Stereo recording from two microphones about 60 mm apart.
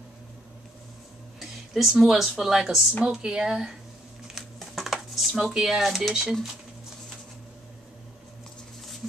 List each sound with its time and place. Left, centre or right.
1.4 s speech: centre
4.6 s dishes: centre